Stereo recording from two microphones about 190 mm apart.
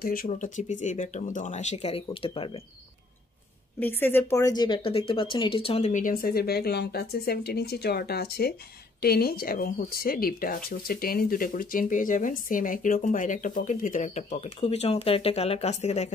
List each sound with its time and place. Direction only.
0.0 s speech: 50° left (ahead or behind); by 2.6 s 30° left (ahead or behind)
3.8 s speech: 10° left (ahead or behind); by 16.1 s 35° left (ahead or behind)